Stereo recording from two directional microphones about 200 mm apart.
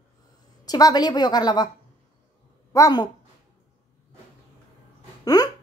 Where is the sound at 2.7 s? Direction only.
20° left (ahead or behind).